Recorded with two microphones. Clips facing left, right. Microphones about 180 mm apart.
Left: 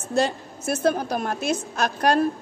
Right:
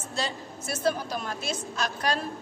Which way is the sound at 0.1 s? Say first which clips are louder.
Left 10 dB; 50° left (ahead or behind).